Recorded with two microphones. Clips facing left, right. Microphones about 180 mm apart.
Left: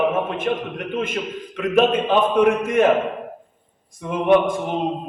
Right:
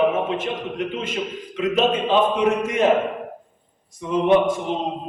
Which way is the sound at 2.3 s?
50° left (ahead or behind).